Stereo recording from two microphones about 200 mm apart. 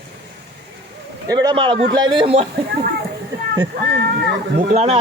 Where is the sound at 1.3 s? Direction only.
20° right (ahead or behind).